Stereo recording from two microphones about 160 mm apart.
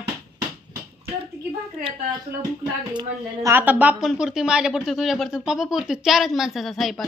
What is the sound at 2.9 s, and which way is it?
A woman's voice, 20° right (ahead or behind).